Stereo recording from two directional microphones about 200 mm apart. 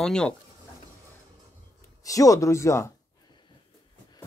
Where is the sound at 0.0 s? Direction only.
5° left (ahead or behind).